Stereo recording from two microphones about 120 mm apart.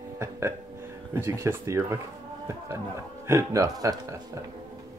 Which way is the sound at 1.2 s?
20° right (ahead or behind).